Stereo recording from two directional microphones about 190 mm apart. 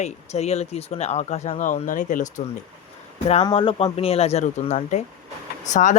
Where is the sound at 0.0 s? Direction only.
35° left (ahead or behind).